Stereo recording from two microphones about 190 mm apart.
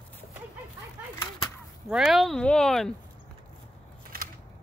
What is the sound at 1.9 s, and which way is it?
Speech, centre (ahead or behind).